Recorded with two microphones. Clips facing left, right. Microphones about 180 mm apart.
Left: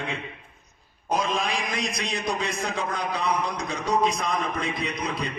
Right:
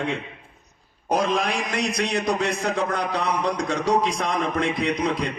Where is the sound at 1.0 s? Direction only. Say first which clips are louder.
Right 4 dB; 70° right (ahead or behind).